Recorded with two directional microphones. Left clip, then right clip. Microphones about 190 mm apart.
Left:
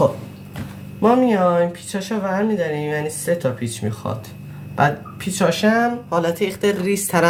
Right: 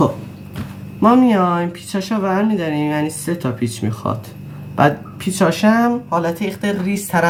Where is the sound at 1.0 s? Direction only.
10° left (ahead or behind).